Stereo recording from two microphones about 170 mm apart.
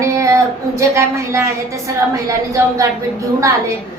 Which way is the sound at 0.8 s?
15° right (ahead or behind).